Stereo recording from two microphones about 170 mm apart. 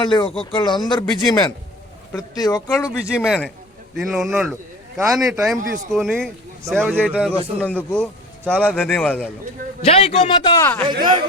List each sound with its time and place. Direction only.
0.0 s speech: 30° left (ahead or behind)
3.2 s a man's voice: centre (ahead or behind)
7.1 s a man's voice: 5° right (ahead or behind)
7.6 s speech: 10° left (ahead or behind)
9.8 s a man's voice: 35° left (ahead or behind)
10.5 s speech: 15° left (ahead or behind)